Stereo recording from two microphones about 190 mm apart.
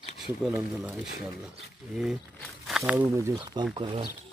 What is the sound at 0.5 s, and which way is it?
Speech, 10° right (ahead or behind).